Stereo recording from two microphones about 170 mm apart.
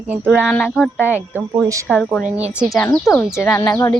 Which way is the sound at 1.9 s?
5° left (ahead or behind).